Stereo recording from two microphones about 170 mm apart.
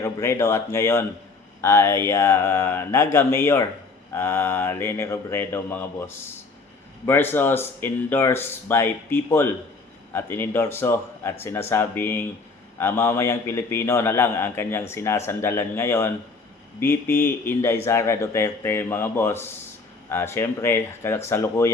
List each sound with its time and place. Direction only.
0.0 s a man's voice: 15° left (ahead or behind)